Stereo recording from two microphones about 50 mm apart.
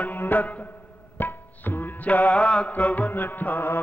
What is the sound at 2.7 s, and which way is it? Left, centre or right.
Music, left.